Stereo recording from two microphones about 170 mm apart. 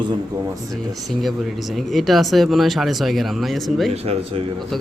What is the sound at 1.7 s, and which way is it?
Speech, centre (ahead or behind).